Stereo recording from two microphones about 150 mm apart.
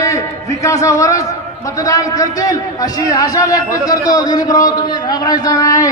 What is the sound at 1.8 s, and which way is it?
A man's voice, 20° left (ahead or behind).